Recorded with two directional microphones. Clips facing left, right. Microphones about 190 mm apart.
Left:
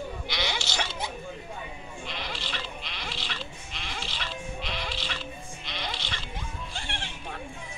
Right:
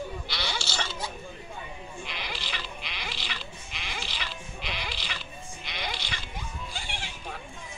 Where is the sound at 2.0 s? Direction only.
Centre (ahead or behind).